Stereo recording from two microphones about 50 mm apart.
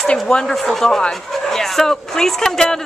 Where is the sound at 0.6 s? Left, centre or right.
Centre.